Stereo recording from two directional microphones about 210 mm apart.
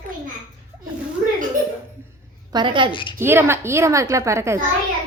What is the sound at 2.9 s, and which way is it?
Speech, 25° left (ahead or behind).